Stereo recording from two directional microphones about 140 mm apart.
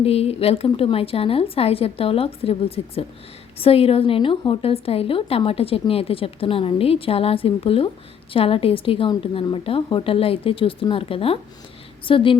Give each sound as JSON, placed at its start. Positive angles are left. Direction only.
{"t": 0.0, "sound": "a woman's voice", "side_deg": 45}